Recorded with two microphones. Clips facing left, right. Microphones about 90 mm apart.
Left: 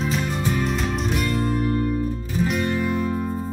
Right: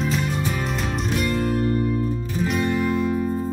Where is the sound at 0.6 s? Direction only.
Centre (ahead or behind).